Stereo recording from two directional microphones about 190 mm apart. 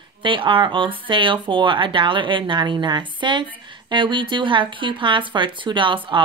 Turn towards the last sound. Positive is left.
turn(degrees=-25)  # may be behind; listen again after turning